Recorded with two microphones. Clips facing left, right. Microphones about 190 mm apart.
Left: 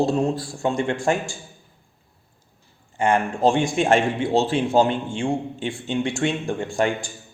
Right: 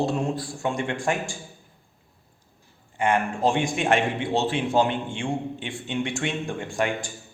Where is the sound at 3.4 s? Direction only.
30° left (ahead or behind).